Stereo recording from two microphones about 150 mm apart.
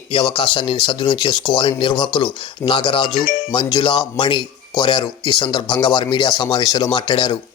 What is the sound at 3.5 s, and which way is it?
Speech, 30° left (ahead or behind).